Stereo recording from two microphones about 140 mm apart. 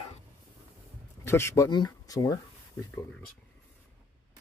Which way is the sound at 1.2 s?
20° left (ahead or behind).